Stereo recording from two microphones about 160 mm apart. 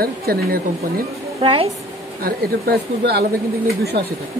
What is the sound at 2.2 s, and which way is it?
Speech, 80° right.